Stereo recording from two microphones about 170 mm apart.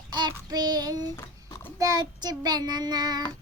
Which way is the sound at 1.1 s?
15° left (ahead or behind).